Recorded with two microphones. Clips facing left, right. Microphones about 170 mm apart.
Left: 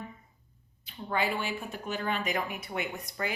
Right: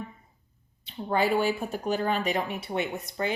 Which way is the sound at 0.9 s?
35° right (ahead or behind).